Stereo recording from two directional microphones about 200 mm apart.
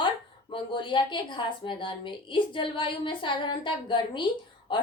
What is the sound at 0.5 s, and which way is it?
A woman's voice, 25° left (ahead or behind).